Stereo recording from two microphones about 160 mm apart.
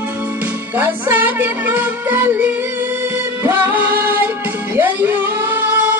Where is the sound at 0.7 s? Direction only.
10° right (ahead or behind).